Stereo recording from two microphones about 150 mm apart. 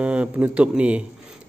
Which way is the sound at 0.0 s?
10° right (ahead or behind).